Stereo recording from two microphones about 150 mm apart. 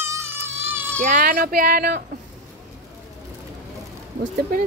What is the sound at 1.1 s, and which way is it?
Speech, 65° right (ahead or behind).